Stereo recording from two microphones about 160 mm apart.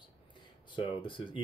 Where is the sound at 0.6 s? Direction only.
30° left (ahead or behind).